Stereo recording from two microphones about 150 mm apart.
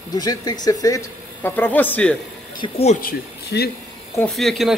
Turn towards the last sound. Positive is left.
turn(degrees=0)  # may be behind; listen again after turning